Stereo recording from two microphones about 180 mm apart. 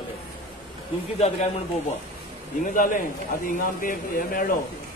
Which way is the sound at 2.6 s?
45° left (ahead or behind).